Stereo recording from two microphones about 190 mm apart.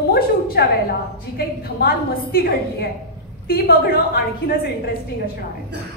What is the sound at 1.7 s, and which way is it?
A woman's voice, 50° left (ahead or behind).